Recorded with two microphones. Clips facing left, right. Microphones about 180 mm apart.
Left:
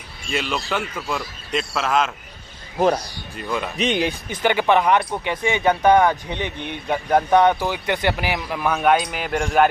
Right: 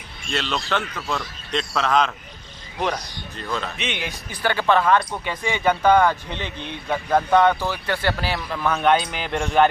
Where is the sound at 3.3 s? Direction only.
10° left (ahead or behind).